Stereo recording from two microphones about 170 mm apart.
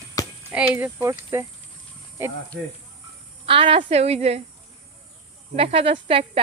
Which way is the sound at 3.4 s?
30° right (ahead or behind).